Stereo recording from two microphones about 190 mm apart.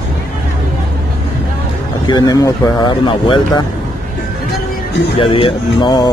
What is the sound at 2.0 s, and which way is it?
Speech, 20° left (ahead or behind).